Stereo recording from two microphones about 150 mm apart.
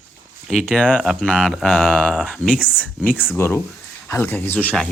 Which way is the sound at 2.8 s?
10° left (ahead or behind).